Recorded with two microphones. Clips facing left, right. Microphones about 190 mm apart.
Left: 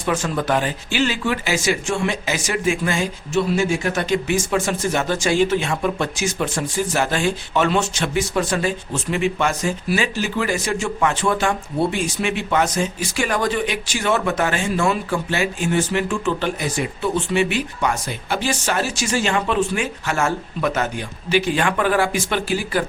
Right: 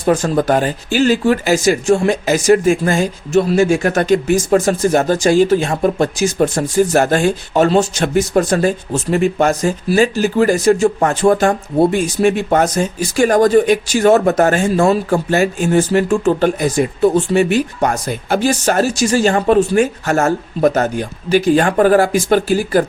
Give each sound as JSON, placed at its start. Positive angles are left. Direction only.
{"t": 0.0, "sound": "speech", "side_deg": -40}